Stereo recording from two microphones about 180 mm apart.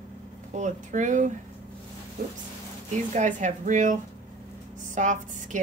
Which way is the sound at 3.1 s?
45° right (ahead or behind).